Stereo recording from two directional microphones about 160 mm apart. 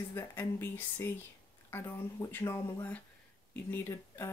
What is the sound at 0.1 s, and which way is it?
Speech, 15° left (ahead or behind).